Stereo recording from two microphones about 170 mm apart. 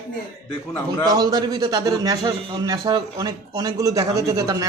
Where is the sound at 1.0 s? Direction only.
25° right (ahead or behind).